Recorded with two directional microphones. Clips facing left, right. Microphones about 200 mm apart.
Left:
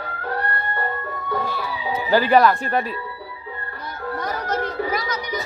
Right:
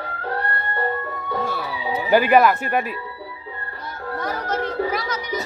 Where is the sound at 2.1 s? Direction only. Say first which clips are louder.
Right 1 dB; 10° right (ahead or behind).